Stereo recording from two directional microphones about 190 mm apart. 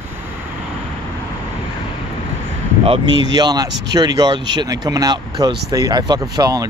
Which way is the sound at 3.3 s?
20° right (ahead or behind).